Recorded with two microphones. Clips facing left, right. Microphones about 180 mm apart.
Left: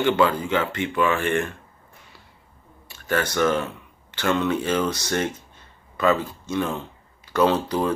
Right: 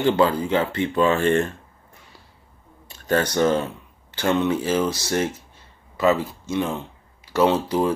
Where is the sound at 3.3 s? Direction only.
25° right (ahead or behind).